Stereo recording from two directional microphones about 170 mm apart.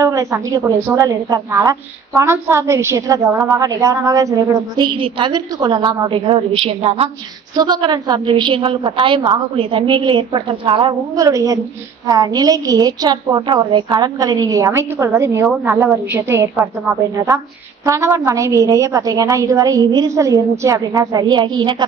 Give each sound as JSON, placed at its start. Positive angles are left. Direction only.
{"t": 0.0, "sound": "a woman's voice", "side_deg": -20}
{"t": 11.2, "sound": "a woman's voice", "side_deg": -20}
{"t": 17.8, "sound": "a woman's voice", "side_deg": -15}